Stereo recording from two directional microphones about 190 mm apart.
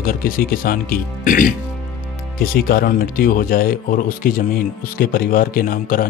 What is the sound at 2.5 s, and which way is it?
Speech, 55° left (ahead or behind).